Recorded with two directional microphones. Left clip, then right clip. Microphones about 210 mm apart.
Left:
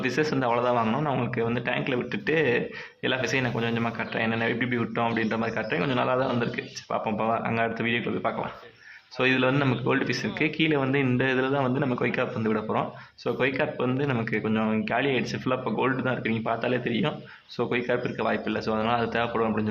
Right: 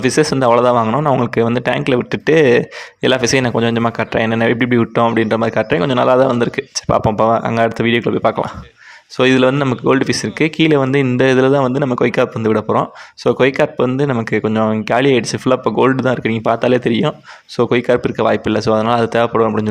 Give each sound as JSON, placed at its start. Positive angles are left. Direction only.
{"t": 0.0, "sound": "speech", "side_deg": -40}
{"t": 1.5, "sound": "speech", "side_deg": -50}
{"t": 13.8, "sound": "speech", "side_deg": -35}